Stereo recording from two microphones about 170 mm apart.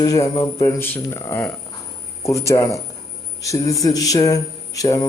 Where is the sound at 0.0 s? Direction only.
20° left (ahead or behind).